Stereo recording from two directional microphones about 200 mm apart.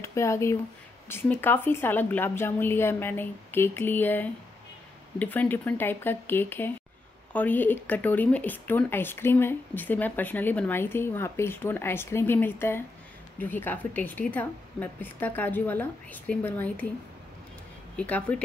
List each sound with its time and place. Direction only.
0.0 s speech: 15° left (ahead or behind)
17.9 s speech: 5° left (ahead or behind)